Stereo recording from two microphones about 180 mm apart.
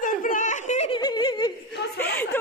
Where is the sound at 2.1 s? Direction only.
10° left (ahead or behind).